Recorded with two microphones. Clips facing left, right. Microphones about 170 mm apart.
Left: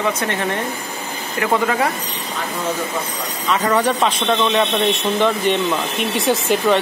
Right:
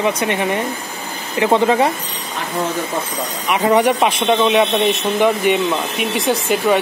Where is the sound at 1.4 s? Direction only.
25° right (ahead or behind).